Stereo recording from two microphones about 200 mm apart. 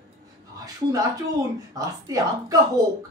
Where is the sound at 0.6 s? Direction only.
20° right (ahead or behind).